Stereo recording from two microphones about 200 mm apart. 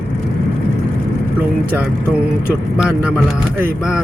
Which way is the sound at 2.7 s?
5° right (ahead or behind).